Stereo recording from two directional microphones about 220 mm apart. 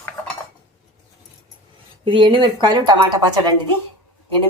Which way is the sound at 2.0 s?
20° right (ahead or behind).